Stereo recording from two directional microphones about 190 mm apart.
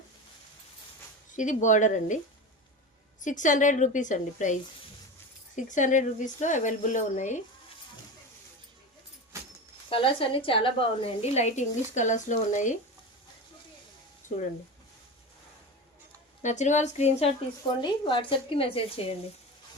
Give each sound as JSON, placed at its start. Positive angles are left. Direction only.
{"t": 1.4, "sound": "a woman's voice", "side_deg": 40}
{"t": 9.9, "sound": "a woman's voice", "side_deg": 30}
{"t": 14.2, "sound": "a sound", "side_deg": 40}
{"t": 16.4, "sound": "a woman's voice", "side_deg": 40}